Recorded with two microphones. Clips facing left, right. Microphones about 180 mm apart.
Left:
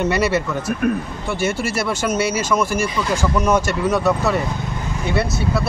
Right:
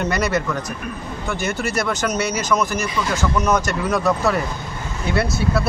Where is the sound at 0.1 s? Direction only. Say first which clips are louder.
Left 2 dB; 5° left (ahead or behind).